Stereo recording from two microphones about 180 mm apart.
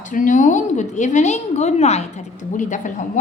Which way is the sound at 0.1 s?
45° left (ahead or behind).